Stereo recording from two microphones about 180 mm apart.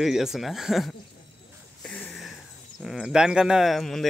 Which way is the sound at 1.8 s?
5° left (ahead or behind).